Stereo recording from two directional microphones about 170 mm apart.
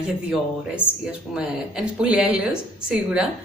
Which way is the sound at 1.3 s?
5° right (ahead or behind).